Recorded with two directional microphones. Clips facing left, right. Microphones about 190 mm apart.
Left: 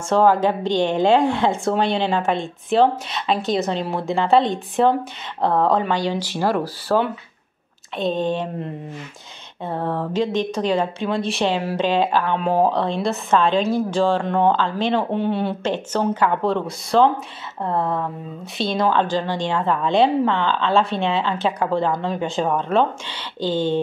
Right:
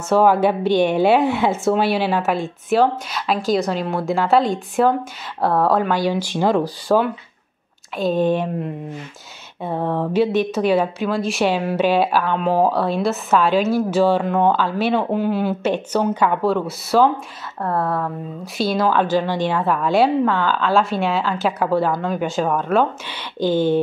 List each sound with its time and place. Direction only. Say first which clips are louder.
0.1 s a woman's voice: right 1 dB; 10° right (ahead or behind)
8.0 s a woman's voice: right 3 dB; 10° right (ahead or behind)
17.6 s speech: right 1 dB; 20° left (ahead or behind)
18.4 s a woman's voice: right 2 dB; 5° right (ahead or behind)